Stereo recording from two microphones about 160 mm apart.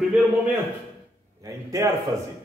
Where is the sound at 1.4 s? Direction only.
20° right (ahead or behind).